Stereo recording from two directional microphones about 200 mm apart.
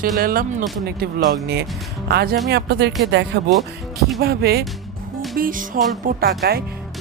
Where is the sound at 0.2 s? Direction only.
45° right (ahead or behind).